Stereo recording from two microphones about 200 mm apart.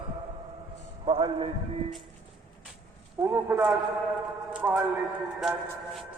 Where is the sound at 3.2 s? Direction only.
10° right (ahead or behind).